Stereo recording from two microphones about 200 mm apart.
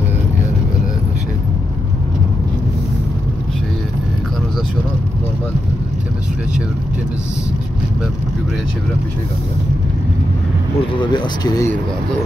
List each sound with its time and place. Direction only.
11.0 s vehicle: 20° left (ahead or behind)